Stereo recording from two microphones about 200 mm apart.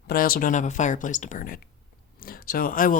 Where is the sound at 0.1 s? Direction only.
45° left (ahead or behind).